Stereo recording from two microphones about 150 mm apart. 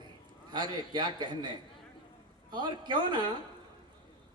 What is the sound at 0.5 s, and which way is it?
A woman's voice, 30° right (ahead or behind).